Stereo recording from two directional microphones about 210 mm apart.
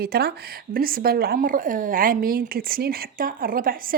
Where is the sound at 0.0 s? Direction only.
50° right (ahead or behind).